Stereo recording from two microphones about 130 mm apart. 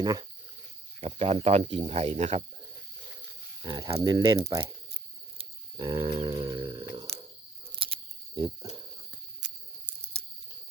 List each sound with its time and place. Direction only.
0.0 s speech: 30° right (ahead or behind)
1.0 s speech: 45° right (ahead or behind)
3.6 s speech: 35° right (ahead or behind)
5.7 s a sound: 35° right (ahead or behind)
8.4 s cricket: 30° right (ahead or behind)